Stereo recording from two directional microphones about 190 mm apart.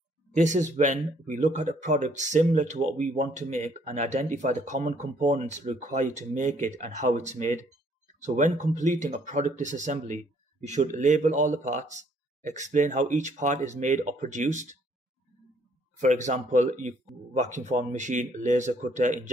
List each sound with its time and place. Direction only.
0.3 s speech: 40° right (ahead or behind)
16.0 s speech: 40° right (ahead or behind)